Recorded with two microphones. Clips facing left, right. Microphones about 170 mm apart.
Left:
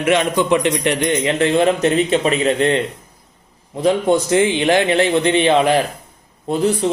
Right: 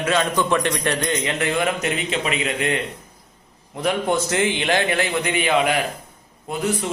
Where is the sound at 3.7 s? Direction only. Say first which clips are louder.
Left 6 dB; 20° left (ahead or behind).